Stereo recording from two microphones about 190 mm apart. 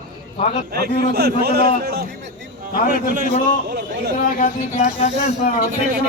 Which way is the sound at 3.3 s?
45° left (ahead or behind).